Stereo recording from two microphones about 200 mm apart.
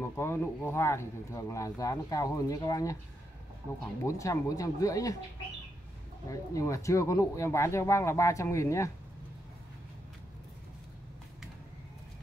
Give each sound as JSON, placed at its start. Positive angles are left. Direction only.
{"t": 0.0, "sound": "speech", "side_deg": 10}
{"t": 4.0, "sound": "speech", "side_deg": 15}
{"t": 6.2, "sound": "speech", "side_deg": 15}